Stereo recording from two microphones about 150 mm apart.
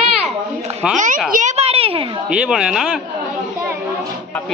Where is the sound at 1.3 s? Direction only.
65° right (ahead or behind).